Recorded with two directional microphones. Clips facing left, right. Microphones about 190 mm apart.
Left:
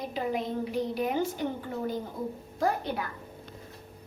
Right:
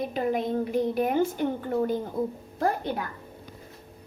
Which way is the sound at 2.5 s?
50° right (ahead or behind).